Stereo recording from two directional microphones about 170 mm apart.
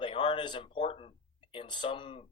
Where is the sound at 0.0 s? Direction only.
30° left (ahead or behind).